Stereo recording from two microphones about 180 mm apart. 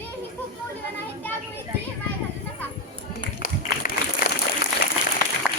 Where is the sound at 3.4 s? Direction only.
55° left (ahead or behind).